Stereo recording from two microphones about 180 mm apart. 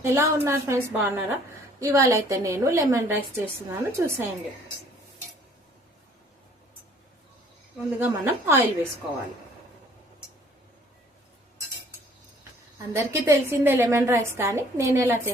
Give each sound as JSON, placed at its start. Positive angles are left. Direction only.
{"t": 0.0, "sound": "a woman's voice", "side_deg": -15}
{"t": 7.9, "sound": "a woman's voice", "side_deg": -10}
{"t": 12.9, "sound": "a woman's voice", "side_deg": -15}